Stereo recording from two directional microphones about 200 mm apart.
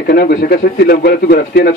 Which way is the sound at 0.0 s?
50° left (ahead or behind).